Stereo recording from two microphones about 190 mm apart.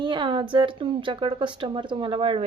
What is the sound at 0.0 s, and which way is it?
A woman's voice, 25° right (ahead or behind).